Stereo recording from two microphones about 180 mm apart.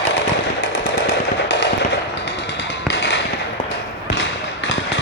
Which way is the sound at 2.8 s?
75° left (ahead or behind).